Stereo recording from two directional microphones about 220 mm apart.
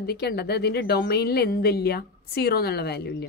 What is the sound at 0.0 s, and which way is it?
A woman's voice, 45° left (ahead or behind).